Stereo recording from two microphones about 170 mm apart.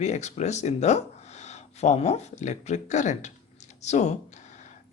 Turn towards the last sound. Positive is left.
turn(degrees=40)  # may be behind; listen again after turning